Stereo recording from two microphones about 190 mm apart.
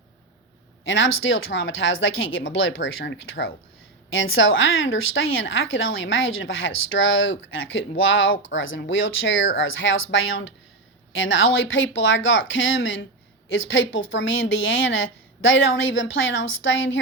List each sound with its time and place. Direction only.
0.9 s a woman's voice: 80° left
4.1 s a woman's voice: 90° left